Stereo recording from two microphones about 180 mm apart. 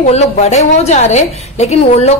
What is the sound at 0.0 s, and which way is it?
A woman's voice, 40° left (ahead or behind).